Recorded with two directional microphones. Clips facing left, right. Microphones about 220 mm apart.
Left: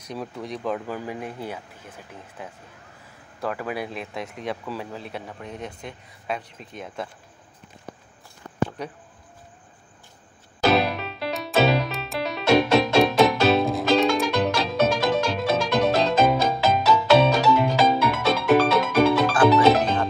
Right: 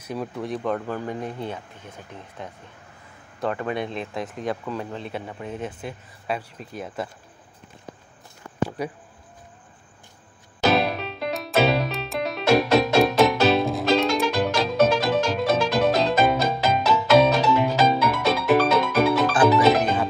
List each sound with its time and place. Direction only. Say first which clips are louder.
0.0 s speech: right 3 dB; 5° right (ahead or behind)
8.6 s speech: right 4 dB; 10° right (ahead or behind)
10.7 s music: even; centre (ahead or behind)
19.3 s music: even; 20° right (ahead or behind)